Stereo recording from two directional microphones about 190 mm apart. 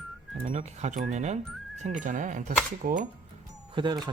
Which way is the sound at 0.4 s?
40° right (ahead or behind).